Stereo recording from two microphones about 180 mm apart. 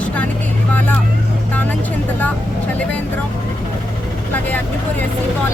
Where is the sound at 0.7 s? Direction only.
10° left (ahead or behind).